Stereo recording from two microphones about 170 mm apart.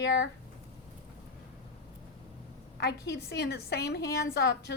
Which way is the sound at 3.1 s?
70° left (ahead or behind).